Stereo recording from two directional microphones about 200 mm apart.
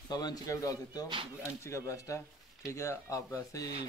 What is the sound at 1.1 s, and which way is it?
Speech, 25° right (ahead or behind).